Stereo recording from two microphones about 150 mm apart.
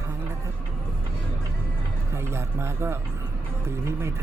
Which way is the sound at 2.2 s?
15° right (ahead or behind).